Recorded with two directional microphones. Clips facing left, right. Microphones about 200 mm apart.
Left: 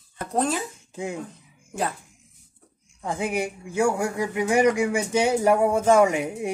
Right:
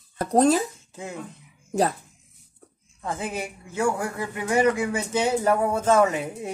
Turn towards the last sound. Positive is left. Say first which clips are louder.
# left 2 dB
turn(degrees=15)  # may be behind; listen again after turning